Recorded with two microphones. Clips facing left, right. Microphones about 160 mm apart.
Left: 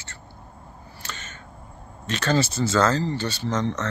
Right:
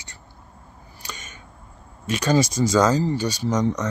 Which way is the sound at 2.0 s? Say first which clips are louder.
Right 3 dB; 10° right (ahead or behind).